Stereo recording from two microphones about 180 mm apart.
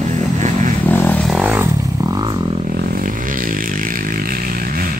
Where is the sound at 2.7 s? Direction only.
50° right (ahead or behind).